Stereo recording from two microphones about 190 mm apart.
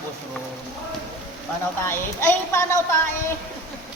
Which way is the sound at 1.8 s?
10° left (ahead or behind).